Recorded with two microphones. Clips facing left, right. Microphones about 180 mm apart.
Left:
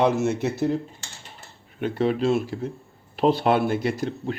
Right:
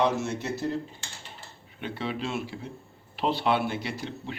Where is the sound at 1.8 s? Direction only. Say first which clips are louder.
Left 10 dB; 45° left (ahead or behind).